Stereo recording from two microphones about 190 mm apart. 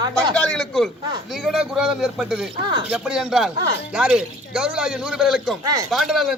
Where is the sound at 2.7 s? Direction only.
25° right (ahead or behind).